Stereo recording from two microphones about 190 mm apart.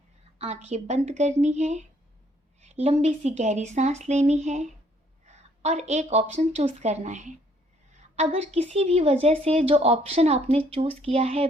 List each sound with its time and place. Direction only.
0.3 s a woman's voice: 35° right (ahead or behind)